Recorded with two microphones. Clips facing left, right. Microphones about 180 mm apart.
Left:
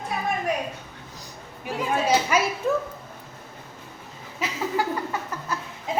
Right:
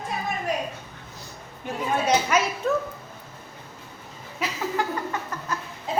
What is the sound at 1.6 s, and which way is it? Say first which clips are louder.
Speech: even; 10° left (ahead or behind).